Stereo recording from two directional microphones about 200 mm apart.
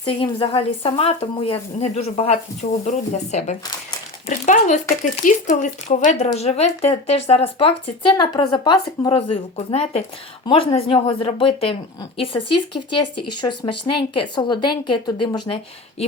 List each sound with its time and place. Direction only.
0.1 s speech: 25° left (ahead or behind)